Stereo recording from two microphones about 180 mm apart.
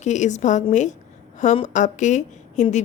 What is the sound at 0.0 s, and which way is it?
A woman's voice, 40° left (ahead or behind).